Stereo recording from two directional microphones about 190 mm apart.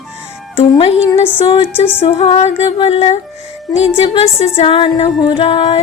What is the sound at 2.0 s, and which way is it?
Music, 35° left (ahead or behind).